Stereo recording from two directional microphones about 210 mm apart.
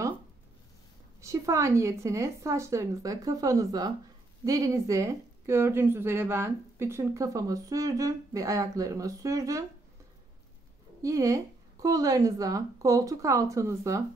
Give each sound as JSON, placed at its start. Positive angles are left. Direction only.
{"t": 1.2, "sound": "speech", "side_deg": -15}
{"t": 11.0, "sound": "speech", "side_deg": -15}